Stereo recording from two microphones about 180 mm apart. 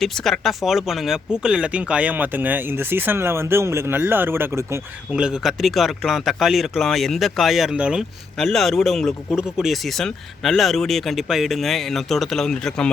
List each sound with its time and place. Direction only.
0.0 s speech: centre (ahead or behind)